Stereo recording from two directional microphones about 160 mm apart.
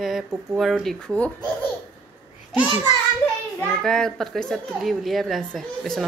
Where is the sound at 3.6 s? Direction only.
5° left (ahead or behind).